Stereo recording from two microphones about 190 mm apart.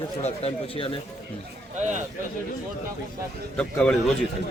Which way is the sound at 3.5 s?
5° left (ahead or behind).